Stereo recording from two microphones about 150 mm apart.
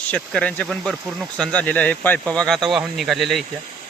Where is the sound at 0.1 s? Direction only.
10° left (ahead or behind).